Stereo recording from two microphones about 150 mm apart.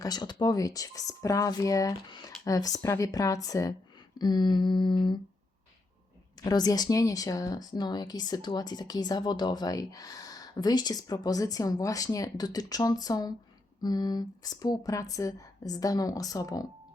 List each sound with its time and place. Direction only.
0.0 s speech: 25° left (ahead or behind)
4.2 s humming: 30° left (ahead or behind)
6.4 s speech: 25° left (ahead or behind)